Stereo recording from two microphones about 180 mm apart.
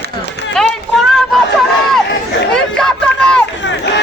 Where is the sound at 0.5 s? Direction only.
Centre (ahead or behind).